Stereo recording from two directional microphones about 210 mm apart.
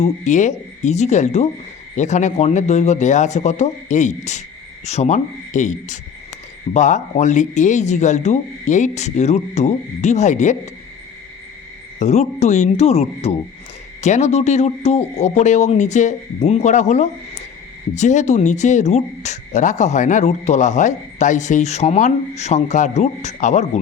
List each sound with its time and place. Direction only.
0.0 s speech: 35° left (ahead or behind)
11.9 s speech: 35° left (ahead or behind)